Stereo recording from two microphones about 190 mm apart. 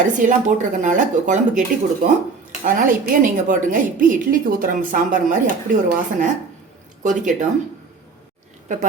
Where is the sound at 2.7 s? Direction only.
45° right (ahead or behind).